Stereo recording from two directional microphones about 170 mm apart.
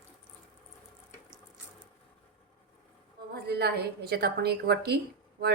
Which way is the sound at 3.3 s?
70° right (ahead or behind).